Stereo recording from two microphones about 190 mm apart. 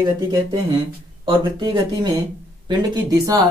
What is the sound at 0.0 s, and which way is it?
Speech, 20° right (ahead or behind).